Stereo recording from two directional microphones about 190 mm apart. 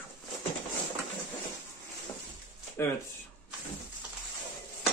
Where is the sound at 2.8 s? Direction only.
15° left (ahead or behind).